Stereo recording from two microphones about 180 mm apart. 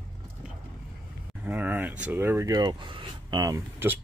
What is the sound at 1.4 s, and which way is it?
Speech, 10° right (ahead or behind).